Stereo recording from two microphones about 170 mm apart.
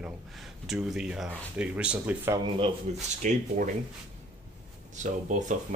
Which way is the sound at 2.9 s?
45° right (ahead or behind).